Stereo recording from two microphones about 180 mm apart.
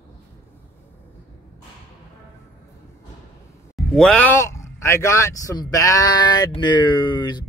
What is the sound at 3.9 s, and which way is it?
Speech, 5° left (ahead or behind).